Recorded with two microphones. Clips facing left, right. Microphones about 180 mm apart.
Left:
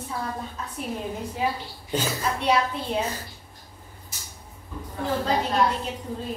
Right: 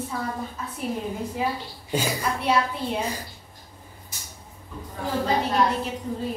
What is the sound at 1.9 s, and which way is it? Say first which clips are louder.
Speech: right 1 dB; 10° right (ahead or behind).